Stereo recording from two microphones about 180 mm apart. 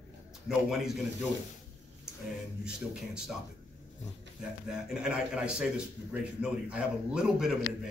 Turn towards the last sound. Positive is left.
turn(degrees=-5)  # may be behind; listen again after turning